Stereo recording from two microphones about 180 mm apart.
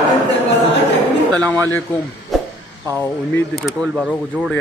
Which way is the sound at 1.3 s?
5° left (ahead or behind).